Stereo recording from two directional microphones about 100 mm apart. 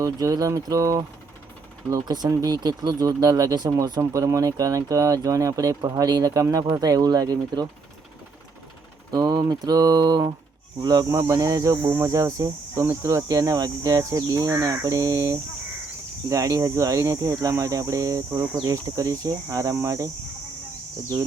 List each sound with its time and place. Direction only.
0.0 s speech: 35° right (ahead or behind)
4.2 s speech: 30° right (ahead or behind)
9.1 s speech: 40° right (ahead or behind)